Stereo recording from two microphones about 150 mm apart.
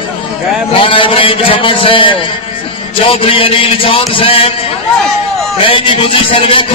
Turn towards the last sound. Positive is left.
turn(degrees=35)  # may be behind; listen again after turning